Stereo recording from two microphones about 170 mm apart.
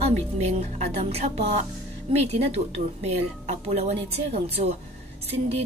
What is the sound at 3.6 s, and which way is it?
A woman's voice, 35° right (ahead or behind).